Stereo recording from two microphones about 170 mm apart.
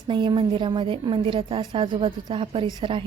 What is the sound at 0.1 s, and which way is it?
A woman's voice, 30° right (ahead or behind).